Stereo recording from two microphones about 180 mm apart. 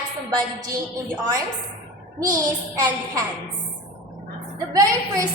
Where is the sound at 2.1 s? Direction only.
20° right (ahead or behind).